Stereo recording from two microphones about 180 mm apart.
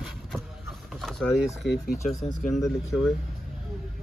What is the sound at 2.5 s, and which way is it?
Speech, centre (ahead or behind).